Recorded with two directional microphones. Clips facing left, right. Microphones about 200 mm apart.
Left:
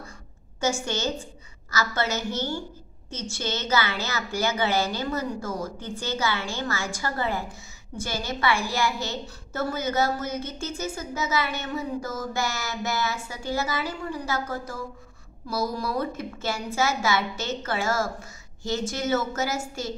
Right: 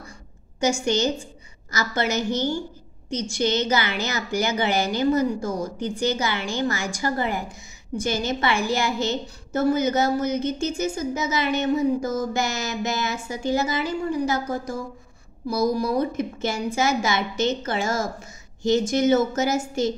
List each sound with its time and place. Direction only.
0.8 s a woman's voice: 15° right (ahead or behind)